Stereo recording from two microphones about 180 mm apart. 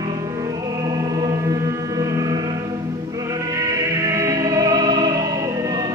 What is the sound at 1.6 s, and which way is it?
Music, 15° right (ahead or behind).